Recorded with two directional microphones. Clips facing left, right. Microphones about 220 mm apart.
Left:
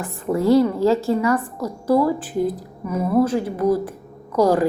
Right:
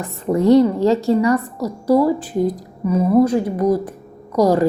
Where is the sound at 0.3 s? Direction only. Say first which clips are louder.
Right 3 dB; 20° right (ahead or behind).